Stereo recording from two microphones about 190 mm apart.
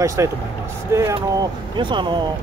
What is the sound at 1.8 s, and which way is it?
Speech, 25° right (ahead or behind).